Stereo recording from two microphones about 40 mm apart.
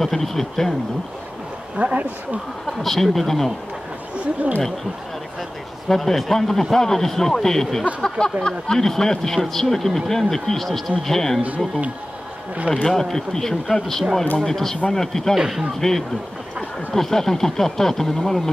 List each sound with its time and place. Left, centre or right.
0.0 s speech: centre
1.8 s speech: right
2.6 s speech: centre
4.2 s speech: right
5.9 s speech: centre
12.7 s speech: right
13.1 s speech: centre
15.3 s speech: centre
15.8 s speech: centre